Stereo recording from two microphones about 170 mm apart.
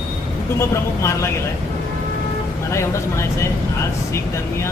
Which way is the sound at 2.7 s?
15° left (ahead or behind).